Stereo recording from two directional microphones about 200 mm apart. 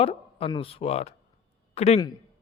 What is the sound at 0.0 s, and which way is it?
Speech, 30° left (ahead or behind).